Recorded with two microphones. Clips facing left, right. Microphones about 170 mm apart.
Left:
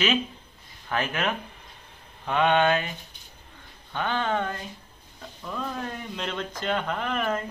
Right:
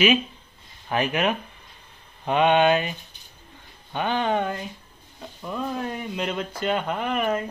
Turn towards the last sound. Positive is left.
turn(degrees=-10)  # may be behind; listen again after turning